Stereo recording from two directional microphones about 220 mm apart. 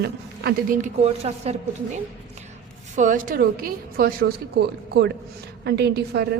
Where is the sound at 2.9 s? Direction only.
35° right (ahead or behind).